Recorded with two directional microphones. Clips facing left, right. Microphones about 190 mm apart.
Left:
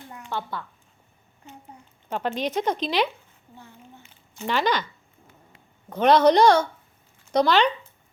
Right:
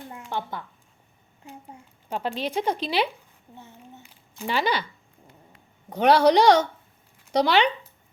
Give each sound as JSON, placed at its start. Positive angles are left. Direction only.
{"t": 0.3, "sound": "a woman's voice", "side_deg": -15}
{"t": 2.4, "sound": "a woman's voice", "side_deg": -10}
{"t": 4.4, "sound": "a woman's voice", "side_deg": -10}
{"t": 5.9, "sound": "a woman's voice", "side_deg": -10}